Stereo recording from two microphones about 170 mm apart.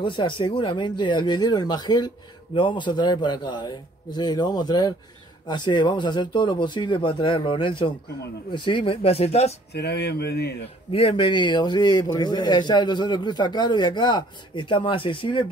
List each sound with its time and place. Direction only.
0.0 s speech: 30° left (ahead or behind)
9.7 s speech: 75° left (ahead or behind)
10.9 s speech: 30° left (ahead or behind)